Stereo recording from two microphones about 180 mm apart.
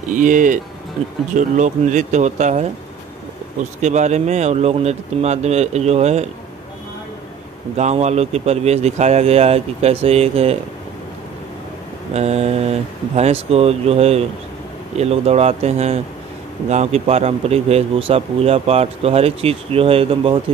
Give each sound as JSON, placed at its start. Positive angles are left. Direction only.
{"t": 0.1, "sound": "a man's voice", "side_deg": -45}
{"t": 3.8, "sound": "a man's voice", "side_deg": -40}
{"t": 7.7, "sound": "a man's voice", "side_deg": -40}
{"t": 12.1, "sound": "a man's voice", "side_deg": -35}